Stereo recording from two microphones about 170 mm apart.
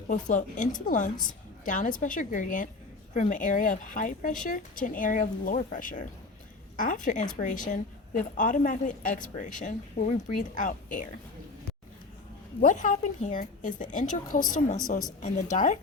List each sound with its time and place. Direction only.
0.1 s a woman's voice: 45° left (ahead or behind)
12.5 s a woman's voice: 50° left (ahead or behind)